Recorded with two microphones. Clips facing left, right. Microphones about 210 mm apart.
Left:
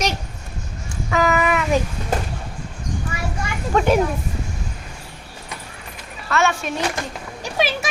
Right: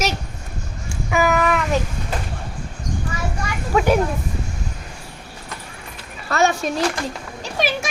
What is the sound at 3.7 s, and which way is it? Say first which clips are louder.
Speech: even; 5° right (ahead or behind).